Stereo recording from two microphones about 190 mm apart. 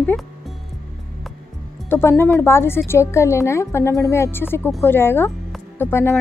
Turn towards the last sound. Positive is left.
turn(degrees=10)  # may be behind; listen again after turning